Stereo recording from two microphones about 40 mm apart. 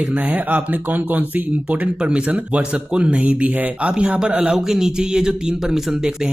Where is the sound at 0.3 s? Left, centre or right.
Right.